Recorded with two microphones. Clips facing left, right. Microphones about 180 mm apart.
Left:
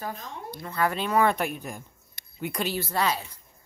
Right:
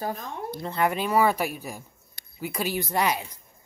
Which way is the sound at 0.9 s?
10° right (ahead or behind).